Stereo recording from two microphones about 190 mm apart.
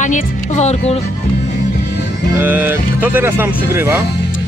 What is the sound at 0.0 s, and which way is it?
Speech, 40° left (ahead or behind).